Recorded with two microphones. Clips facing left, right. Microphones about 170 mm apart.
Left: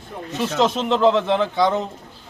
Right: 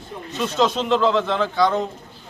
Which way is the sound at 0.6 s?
20° left (ahead or behind).